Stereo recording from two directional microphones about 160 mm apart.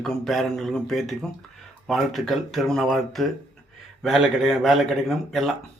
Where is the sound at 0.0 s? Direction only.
Centre (ahead or behind).